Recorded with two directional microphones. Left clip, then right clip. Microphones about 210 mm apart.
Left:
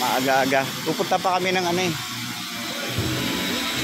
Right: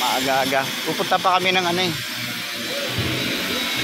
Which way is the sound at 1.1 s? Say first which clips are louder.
Right 4 dB; 10° left (ahead or behind).